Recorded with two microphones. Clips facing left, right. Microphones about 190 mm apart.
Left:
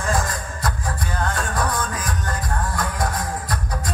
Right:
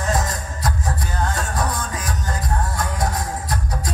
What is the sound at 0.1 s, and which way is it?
Music, 25° right (ahead or behind).